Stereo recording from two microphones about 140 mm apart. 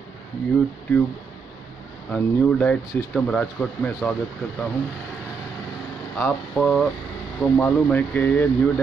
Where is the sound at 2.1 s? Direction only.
10° left (ahead or behind).